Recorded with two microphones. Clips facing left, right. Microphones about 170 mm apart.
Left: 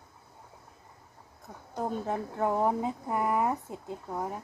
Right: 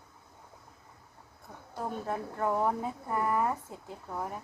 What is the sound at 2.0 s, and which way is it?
Speech, 20° left (ahead or behind).